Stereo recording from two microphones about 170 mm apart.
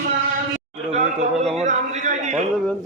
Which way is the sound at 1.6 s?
45° right (ahead or behind).